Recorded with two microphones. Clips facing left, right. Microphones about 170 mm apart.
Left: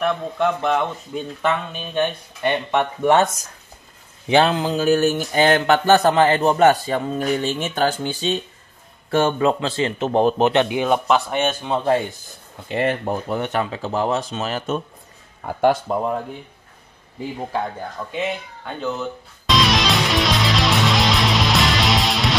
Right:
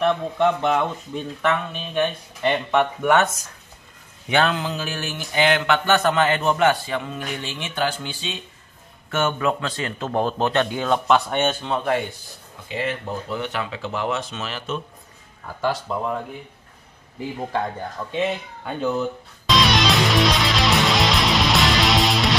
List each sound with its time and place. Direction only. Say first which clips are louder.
0.2 s speech: right 1 dB; centre (ahead or behind)
1.4 s speech: even; 20° left (ahead or behind)
4.3 s a sound: left 4 dB; 30° left (ahead or behind)
9.1 s speech: left 4 dB; 30° left (ahead or behind)
11.1 s speech: even; 5° left (ahead or behind)
11.7 s speech: left 6 dB; 30° left (ahead or behind)
12.7 s speech: left 6 dB; 55° left (ahead or behind)
15.4 s speech: left 7 dB; 55° left (ahead or behind)
17.4 s speech: even; 5° left (ahead or behind)
19.4 s music: even; centre (ahead or behind)